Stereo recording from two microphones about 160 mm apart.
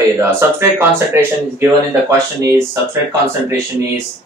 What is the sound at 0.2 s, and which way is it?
Speech, 15° right (ahead or behind).